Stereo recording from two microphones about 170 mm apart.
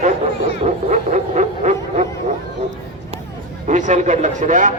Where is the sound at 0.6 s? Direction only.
45° right (ahead or behind).